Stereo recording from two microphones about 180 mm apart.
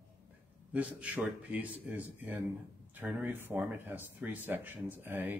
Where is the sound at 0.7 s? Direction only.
10° right (ahead or behind).